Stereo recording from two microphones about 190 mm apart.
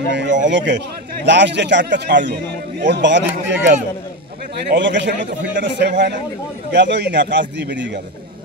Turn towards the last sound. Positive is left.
turn(degrees=-65)  # may be behind; listen again after turning